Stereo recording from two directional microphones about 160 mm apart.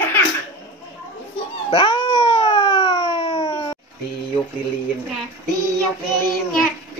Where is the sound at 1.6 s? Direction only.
30° left (ahead or behind).